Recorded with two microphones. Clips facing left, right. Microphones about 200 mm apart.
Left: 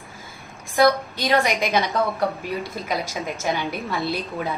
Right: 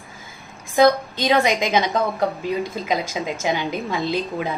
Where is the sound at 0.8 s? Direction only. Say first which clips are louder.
Right 2 dB; 20° right (ahead or behind).